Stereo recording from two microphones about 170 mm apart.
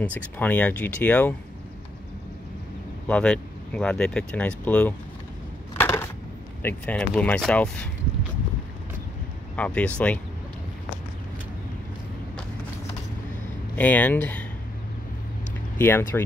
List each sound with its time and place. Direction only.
0.0 s speech: 10° left (ahead or behind)
3.1 s speech: 5° left (ahead or behind)
5.8 s a sound: 15° left (ahead or behind)
6.6 s speech: 10° left (ahead or behind)
9.6 s speech: 10° left (ahead or behind)
13.7 s speech: 10° left (ahead or behind)
15.8 s speech: 10° left (ahead or behind)